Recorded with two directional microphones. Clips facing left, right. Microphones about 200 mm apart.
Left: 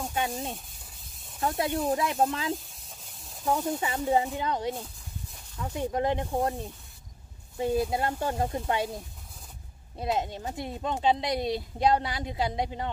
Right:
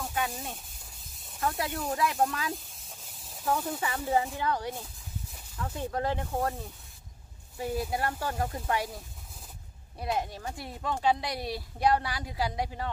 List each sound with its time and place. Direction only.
0.1 s speech: 25° left (ahead or behind)
0.7 s spray: centre (ahead or behind)
1.4 s speech: 25° left (ahead or behind)
2.5 s a sound: centre (ahead or behind)
3.4 s speech: 15° left (ahead or behind)
9.9 s speech: 25° left (ahead or behind)